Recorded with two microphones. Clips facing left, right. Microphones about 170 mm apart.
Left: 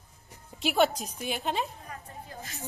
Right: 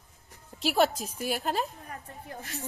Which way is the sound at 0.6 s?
Centre (ahead or behind).